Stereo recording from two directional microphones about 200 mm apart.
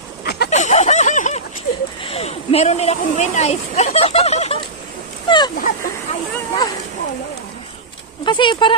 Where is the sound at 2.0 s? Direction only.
30° left (ahead or behind).